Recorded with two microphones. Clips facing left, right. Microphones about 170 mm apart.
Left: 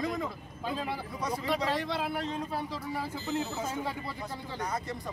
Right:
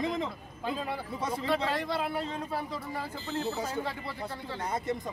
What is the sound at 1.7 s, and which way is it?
Speech, centre (ahead or behind).